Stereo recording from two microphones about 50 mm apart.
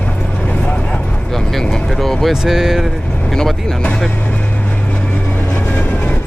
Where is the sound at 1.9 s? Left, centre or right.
Centre.